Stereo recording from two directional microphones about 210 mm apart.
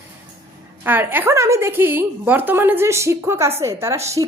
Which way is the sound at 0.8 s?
10° right (ahead or behind).